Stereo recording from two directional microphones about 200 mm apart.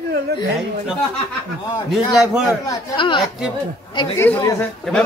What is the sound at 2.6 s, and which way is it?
Speech, 20° left (ahead or behind).